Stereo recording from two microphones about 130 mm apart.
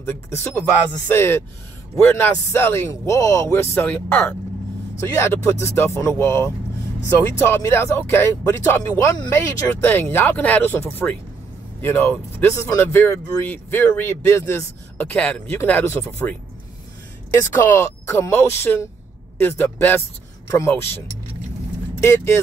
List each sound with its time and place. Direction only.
0.0 s speech: 20° left (ahead or behind)
15.1 s speech: 10° left (ahead or behind)
22.0 s speech: 20° left (ahead or behind)